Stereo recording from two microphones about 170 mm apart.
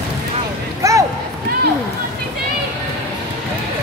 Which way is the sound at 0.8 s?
20° right (ahead or behind).